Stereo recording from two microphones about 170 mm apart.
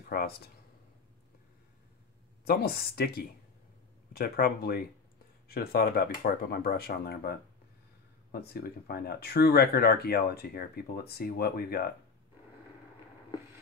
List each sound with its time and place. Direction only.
0.1 s speech: 65° left (ahead or behind)
2.4 s speech: 65° left (ahead or behind)